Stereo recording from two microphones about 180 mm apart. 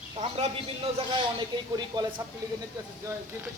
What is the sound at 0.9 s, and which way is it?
Speech, 25° right (ahead or behind).